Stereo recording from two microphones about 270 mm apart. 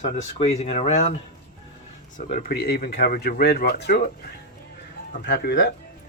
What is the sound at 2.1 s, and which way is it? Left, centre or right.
Speech, left.